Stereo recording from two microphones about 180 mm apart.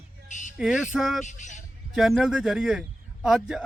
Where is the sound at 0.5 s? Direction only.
5° right (ahead or behind).